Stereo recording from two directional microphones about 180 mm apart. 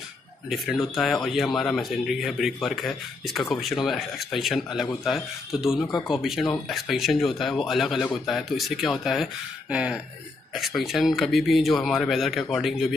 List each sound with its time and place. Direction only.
0.5 s speech: centre (ahead or behind)
5.8 s speech: 20° left (ahead or behind)
6.0 s speech: centre (ahead or behind)